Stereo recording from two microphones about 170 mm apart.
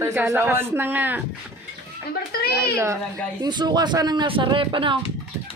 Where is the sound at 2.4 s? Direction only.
70° left (ahead or behind).